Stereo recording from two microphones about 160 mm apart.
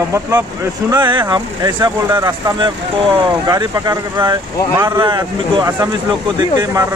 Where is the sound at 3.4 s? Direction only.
25° right (ahead or behind).